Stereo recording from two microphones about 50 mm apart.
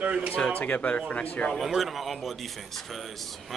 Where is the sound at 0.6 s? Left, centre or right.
Left.